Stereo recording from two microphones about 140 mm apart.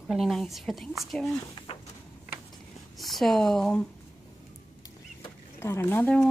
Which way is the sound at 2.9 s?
Centre (ahead or behind).